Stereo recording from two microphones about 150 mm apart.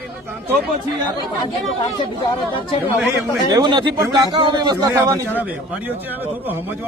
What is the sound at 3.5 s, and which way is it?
A man's voice, 30° right (ahead or behind).